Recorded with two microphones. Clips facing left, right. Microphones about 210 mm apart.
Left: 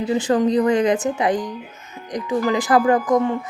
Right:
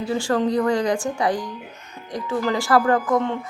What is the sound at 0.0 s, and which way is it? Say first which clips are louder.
Speech: left 3 dB; 20° left (ahead or behind).